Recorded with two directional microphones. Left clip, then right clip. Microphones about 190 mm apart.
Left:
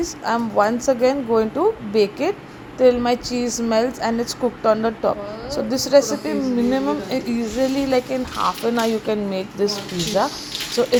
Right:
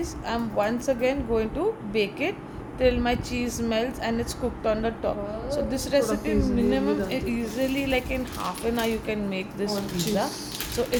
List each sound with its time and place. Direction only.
0.0 s a woman's voice: 25° left (ahead or behind)
10.8 s a woman's voice: 25° left (ahead or behind)